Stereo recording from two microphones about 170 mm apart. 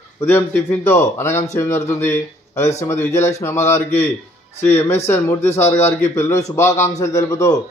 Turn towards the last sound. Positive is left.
turn(degrees=20)  # may be behind; listen again after turning